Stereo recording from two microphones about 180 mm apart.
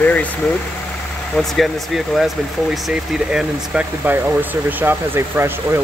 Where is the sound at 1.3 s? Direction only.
Centre (ahead or behind).